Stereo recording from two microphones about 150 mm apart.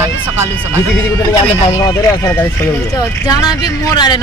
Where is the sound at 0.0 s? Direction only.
15° right (ahead or behind).